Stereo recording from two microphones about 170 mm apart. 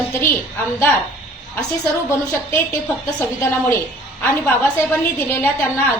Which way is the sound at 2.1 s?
15° left (ahead or behind).